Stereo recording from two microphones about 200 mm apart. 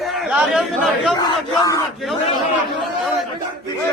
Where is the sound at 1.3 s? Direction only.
20° left (ahead or behind).